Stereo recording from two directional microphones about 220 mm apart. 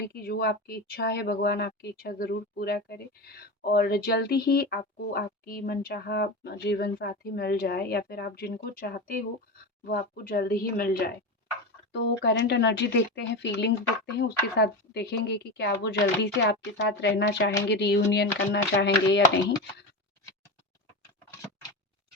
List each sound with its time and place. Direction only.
0.1 s speech: 45° left (ahead or behind)